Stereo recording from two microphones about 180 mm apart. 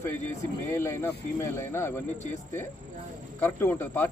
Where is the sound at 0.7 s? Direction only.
15° left (ahead or behind).